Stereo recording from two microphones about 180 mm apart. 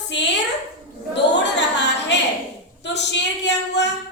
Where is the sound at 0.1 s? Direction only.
80° left.